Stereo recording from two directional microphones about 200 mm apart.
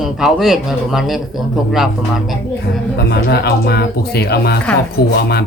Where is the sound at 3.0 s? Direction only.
55° left (ahead or behind).